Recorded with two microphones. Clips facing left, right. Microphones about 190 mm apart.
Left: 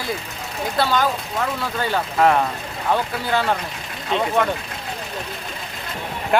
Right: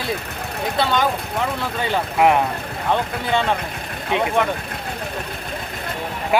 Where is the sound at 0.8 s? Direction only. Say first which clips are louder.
Even; centre (ahead or behind).